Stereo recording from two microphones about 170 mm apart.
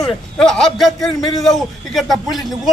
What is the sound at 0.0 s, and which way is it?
A man's voice, 5° left (ahead or behind).